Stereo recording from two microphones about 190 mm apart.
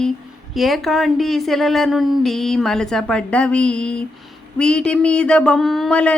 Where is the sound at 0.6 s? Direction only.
Centre (ahead or behind).